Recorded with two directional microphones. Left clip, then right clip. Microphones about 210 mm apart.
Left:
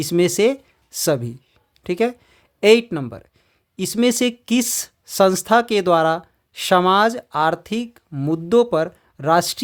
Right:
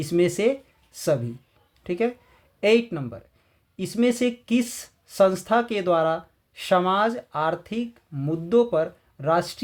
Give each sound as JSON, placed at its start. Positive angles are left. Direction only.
{"t": 0.0, "sound": "speech", "side_deg": 30}